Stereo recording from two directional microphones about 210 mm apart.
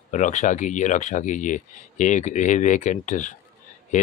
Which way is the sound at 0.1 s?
35° left (ahead or behind).